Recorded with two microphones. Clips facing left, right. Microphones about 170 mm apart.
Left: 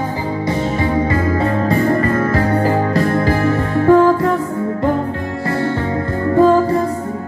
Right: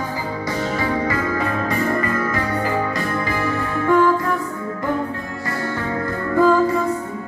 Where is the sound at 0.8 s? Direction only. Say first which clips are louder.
Left 5 dB; 25° left (ahead or behind).